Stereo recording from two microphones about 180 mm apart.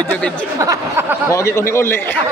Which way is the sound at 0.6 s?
15° right (ahead or behind).